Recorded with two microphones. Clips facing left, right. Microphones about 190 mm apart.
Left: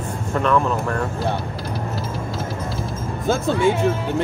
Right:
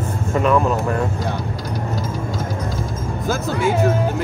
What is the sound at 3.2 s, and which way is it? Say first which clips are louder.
Speech: left 3 dB; 30° left (ahead or behind).